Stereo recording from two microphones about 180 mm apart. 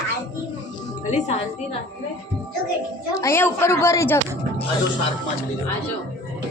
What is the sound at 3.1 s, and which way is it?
A woman's voice, 15° left (ahead or behind).